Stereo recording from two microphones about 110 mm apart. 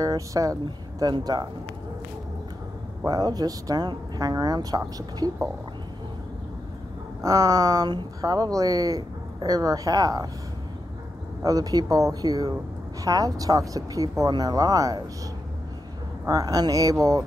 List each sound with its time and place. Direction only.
0.0 s speech: 30° right (ahead or behind)
3.1 s speech: 35° right (ahead or behind)
7.2 s speech: 35° right (ahead or behind)
11.4 s speech: 35° right (ahead or behind)
16.3 s speech: 35° right (ahead or behind)